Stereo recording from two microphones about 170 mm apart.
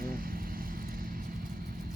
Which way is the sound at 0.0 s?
60° right (ahead or behind).